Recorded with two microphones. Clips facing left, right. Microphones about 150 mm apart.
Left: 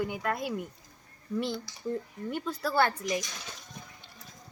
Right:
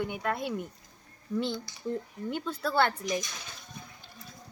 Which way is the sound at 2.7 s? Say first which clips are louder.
Even; 5° left (ahead or behind).